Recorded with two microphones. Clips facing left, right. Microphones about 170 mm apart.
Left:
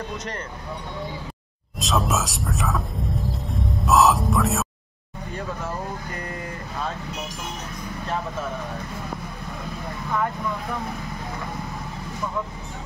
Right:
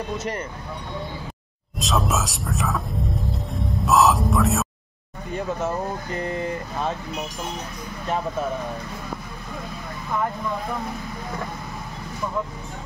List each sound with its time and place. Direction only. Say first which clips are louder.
1.8 s speech: even; centre (ahead or behind)
3.8 s speech: even; centre (ahead or behind)
6.1 s speech: right 6 dB; 25° right (ahead or behind)